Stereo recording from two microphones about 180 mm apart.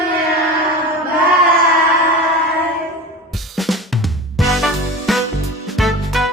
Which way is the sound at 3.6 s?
Centre (ahead or behind).